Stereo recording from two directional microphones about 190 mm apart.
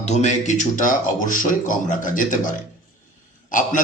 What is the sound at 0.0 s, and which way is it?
A man's voice, 35° left (ahead or behind).